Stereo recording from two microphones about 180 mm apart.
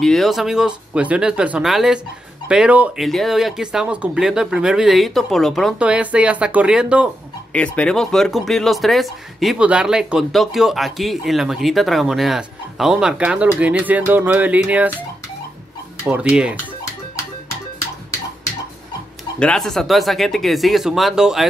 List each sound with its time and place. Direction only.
0.0 s speech: centre (ahead or behind)
7.5 s speech: 5° left (ahead or behind)
16.1 s speech: 5° right (ahead or behind)
19.4 s speech: 5° left (ahead or behind)